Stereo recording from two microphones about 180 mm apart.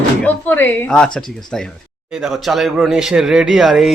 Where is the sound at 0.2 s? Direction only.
10° left (ahead or behind).